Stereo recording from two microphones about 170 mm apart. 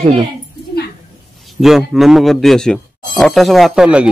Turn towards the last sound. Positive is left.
turn(degrees=-5)  # may be behind; listen again after turning